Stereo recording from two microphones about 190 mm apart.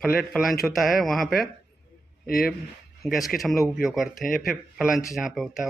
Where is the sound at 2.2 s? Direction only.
50° left (ahead or behind).